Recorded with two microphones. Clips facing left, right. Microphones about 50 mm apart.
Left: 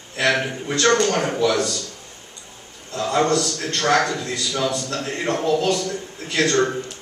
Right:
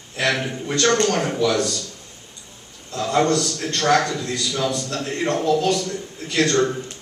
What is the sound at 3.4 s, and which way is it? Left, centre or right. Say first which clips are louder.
Speech: even; centre.